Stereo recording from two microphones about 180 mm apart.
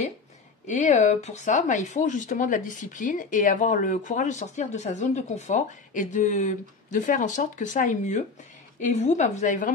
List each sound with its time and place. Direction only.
0.7 s speech: 40° left (ahead or behind)